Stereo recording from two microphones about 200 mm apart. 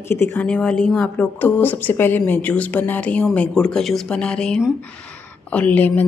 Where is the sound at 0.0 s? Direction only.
10° left (ahead or behind).